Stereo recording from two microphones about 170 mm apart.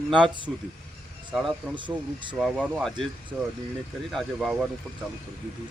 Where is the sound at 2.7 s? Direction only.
5° left (ahead or behind).